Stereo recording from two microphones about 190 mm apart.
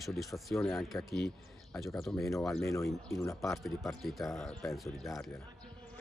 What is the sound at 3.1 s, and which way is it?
Speech, 15° left (ahead or behind).